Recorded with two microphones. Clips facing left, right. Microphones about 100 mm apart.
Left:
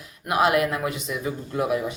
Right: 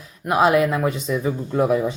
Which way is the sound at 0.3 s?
25° right (ahead or behind).